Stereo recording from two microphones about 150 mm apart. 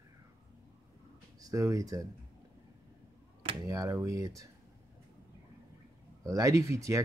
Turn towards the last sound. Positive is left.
turn(degrees=-20)  # may be behind; listen again after turning